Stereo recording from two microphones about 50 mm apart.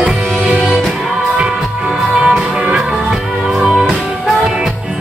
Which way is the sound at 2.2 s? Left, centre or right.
Centre.